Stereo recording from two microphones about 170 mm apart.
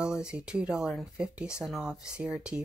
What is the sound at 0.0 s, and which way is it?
Speech, 5° right (ahead or behind).